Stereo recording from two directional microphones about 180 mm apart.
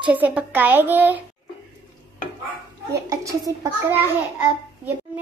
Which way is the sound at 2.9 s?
15° right (ahead or behind).